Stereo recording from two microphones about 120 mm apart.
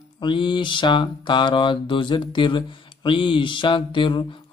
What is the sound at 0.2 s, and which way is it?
Speech, 40° left (ahead or behind).